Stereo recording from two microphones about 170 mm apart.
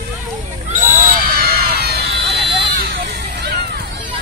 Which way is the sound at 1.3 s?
65° right (ahead or behind).